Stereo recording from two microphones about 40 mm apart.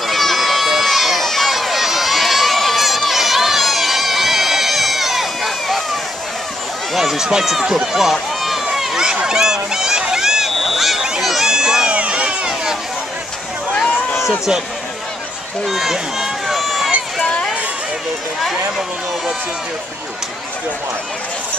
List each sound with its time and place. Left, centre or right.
0.0 s run: centre
6.9 s speech: centre
8.7 s a sound: centre
10.6 s a sound: centre
11.9 s run: right
15.6 s run: centre
17.2 s run: left